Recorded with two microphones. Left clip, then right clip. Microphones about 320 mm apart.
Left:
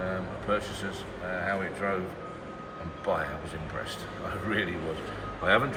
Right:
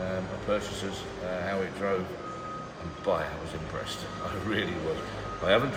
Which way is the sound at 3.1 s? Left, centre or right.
Centre.